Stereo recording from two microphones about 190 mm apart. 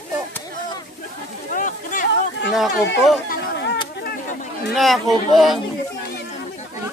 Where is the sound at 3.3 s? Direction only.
60° left (ahead or behind).